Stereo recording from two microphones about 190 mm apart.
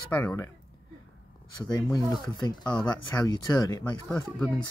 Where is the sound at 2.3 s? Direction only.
20° left (ahead or behind).